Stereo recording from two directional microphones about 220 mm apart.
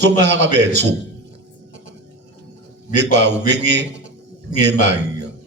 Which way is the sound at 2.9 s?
50° right (ahead or behind).